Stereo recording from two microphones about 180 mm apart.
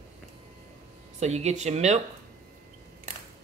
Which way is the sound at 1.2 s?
40° right (ahead or behind).